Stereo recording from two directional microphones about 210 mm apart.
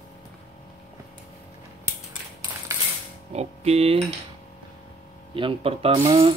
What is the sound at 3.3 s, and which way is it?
Speech, 30° right (ahead or behind).